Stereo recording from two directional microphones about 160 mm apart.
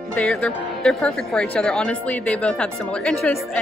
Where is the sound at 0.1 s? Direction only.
10° left (ahead or behind).